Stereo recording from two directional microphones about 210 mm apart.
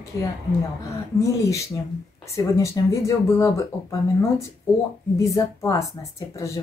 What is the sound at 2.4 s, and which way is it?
Speech, 15° left (ahead or behind).